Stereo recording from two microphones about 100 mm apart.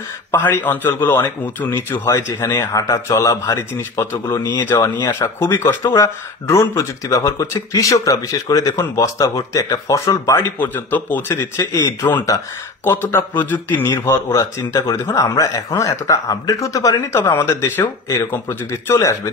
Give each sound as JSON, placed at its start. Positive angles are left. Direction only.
{"t": 0.3, "sound": "a man's voice", "side_deg": 20}
{"t": 2.7, "sound": "speech", "side_deg": 35}
{"t": 4.4, "sound": "speech", "side_deg": 45}
{"t": 4.6, "sound": "a man's voice", "side_deg": 25}
{"t": 10.6, "sound": "a man's voice", "side_deg": 20}
{"t": 11.5, "sound": "a man's voice", "side_deg": 30}
{"t": 17.3, "sound": "a man's voice", "side_deg": 25}